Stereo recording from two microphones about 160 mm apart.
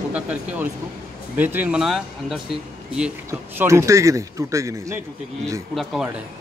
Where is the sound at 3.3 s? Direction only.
20° right (ahead or behind).